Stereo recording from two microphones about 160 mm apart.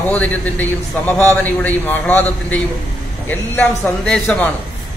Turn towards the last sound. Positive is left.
turn(degrees=10)  # may be behind; listen again after turning